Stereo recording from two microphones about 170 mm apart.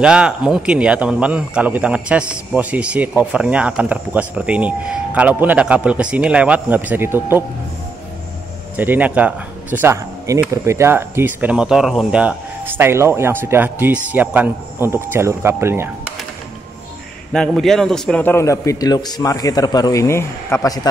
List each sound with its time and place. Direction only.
0.0 s speech: 5° right (ahead or behind)
8.7 s speech: 10° right (ahead or behind)
17.3 s a man's voice: 5° left (ahead or behind); by 20.9 s 20° left (ahead or behind)